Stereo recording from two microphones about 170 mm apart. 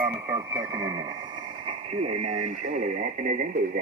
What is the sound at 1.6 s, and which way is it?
Speech, 40° right (ahead or behind).